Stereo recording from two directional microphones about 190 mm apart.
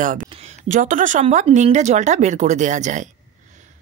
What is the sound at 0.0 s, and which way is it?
Speech, 45° right (ahead or behind).